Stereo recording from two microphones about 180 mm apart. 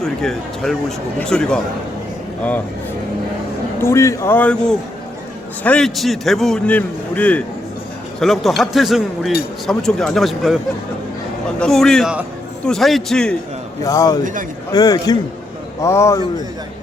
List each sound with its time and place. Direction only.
0.0 s a man's voice: centre (ahead or behind)
3.8 s a man's voice: 15° left (ahead or behind)
11.6 s a man's voice: 5° left (ahead or behind)
13.8 s a man's voice: 20° left (ahead or behind)